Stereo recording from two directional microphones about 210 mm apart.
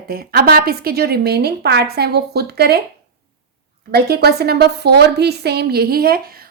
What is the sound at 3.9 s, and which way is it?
A woman's voice, 50° right (ahead or behind).